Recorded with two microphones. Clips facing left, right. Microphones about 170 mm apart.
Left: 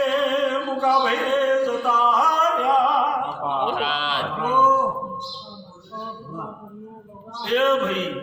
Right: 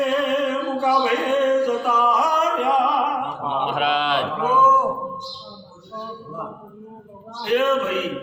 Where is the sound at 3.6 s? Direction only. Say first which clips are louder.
Right 3 dB; 60° right (ahead or behind).